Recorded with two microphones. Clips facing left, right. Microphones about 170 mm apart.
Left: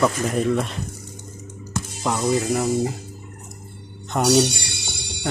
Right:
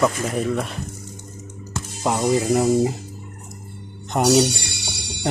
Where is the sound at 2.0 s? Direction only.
25° right (ahead or behind).